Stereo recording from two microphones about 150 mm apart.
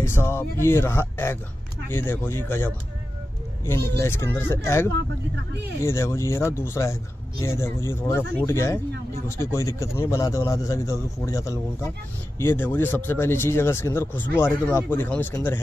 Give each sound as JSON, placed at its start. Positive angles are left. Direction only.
{"t": 0.0, "sound": "speech", "side_deg": 15}